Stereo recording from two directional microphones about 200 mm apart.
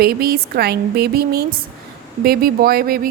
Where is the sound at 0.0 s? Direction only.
50° right (ahead or behind).